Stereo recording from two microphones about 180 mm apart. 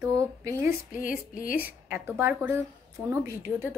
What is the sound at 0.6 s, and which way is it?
Speech, 50° left (ahead or behind).